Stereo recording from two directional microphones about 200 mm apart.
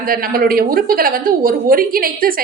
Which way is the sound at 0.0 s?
45° right (ahead or behind).